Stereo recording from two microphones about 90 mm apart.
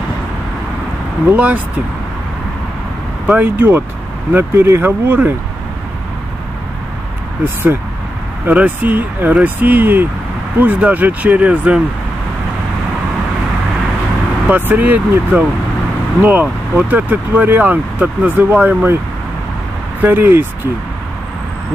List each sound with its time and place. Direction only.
1.3 s speech: 15° right (ahead or behind)
3.3 s speech: 20° right (ahead or behind)
7.4 s speech: 25° right (ahead or behind)
14.5 s speech: 20° right (ahead or behind)
20.0 s speech: 25° right (ahead or behind)